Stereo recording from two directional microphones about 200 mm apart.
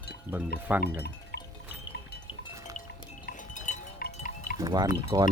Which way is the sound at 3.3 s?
40° left (ahead or behind).